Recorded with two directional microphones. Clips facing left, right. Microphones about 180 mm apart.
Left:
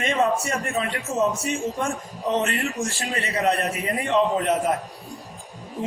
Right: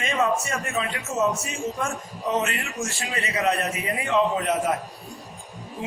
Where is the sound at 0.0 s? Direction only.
35° left (ahead or behind).